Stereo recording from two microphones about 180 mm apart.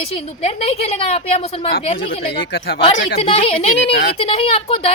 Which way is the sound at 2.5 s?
75° left (ahead or behind).